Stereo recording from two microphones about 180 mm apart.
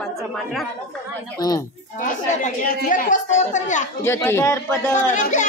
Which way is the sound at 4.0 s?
15° left (ahead or behind).